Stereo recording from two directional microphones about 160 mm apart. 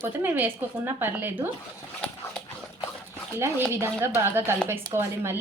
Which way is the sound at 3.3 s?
15° right (ahead or behind).